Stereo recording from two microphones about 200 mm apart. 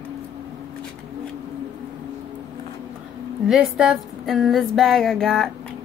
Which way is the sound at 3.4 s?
5° right (ahead or behind).